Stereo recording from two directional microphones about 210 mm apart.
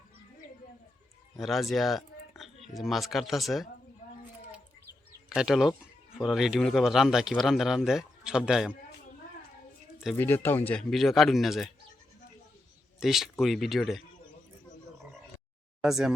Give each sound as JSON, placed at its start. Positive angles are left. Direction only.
{"t": 1.4, "sound": "speech", "side_deg": 0}
{"t": 5.3, "sound": "speech", "side_deg": 0}
{"t": 10.2, "sound": "speech", "side_deg": 10}
{"t": 13.0, "sound": "speech", "side_deg": 0}
{"t": 15.8, "sound": "speech", "side_deg": 0}